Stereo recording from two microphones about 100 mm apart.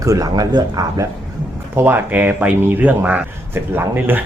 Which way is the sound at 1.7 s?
20° right (ahead or behind).